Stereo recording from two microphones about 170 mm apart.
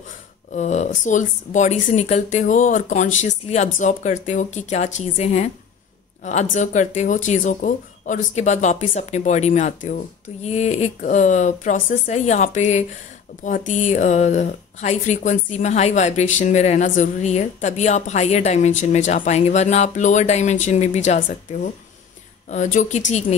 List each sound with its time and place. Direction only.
0.6 s speech: 45° left (ahead or behind)
22.5 s speech: 45° left (ahead or behind)